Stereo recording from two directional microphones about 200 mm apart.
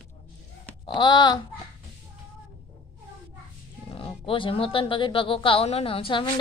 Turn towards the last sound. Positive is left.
turn(degrees=25)  # may be behind; listen again after turning